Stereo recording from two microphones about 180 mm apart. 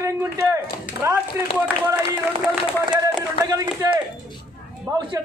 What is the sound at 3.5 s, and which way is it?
Speech, 20° right (ahead or behind).